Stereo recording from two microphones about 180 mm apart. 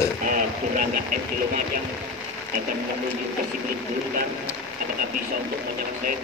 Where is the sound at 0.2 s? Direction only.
50° right (ahead or behind).